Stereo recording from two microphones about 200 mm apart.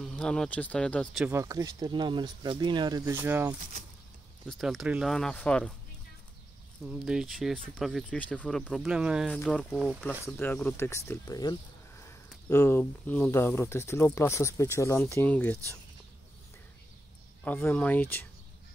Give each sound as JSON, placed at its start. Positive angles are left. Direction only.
{"t": 0.0, "sound": "speech", "side_deg": 5}
{"t": 1.2, "sound": "speech", "side_deg": -15}
{"t": 3.2, "sound": "speech", "side_deg": -10}
{"t": 6.9, "sound": "speech", "side_deg": -5}
{"t": 17.5, "sound": "speech", "side_deg": 10}